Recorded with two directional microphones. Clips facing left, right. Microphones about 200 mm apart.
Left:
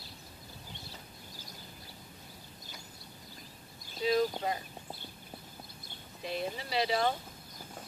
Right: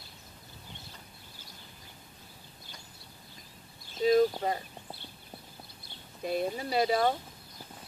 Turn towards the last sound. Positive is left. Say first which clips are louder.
# right 4 dB
turn(degrees=-45)  # may be behind; listen again after turning